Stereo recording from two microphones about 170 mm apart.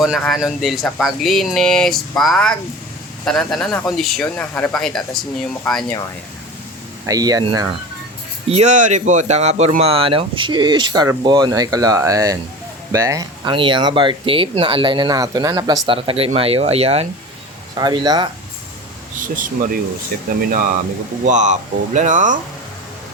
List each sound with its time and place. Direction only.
0.0 s speech: centre (ahead or behind)
7.1 s speech: 20° right (ahead or behind)
8.4 s speech: 40° right (ahead or behind)
17.7 s speech: 25° right (ahead or behind)
19.4 s speech: 50° right (ahead or behind)